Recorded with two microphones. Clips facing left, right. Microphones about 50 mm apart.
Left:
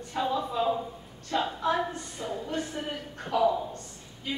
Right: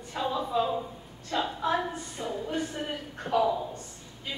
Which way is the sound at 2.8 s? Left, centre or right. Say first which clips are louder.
Even; centre.